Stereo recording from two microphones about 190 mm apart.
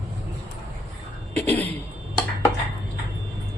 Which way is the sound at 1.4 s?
10° left (ahead or behind).